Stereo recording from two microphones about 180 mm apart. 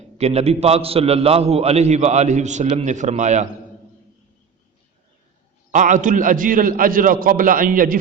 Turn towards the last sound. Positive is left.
turn(degrees=-50)  # may be behind; listen again after turning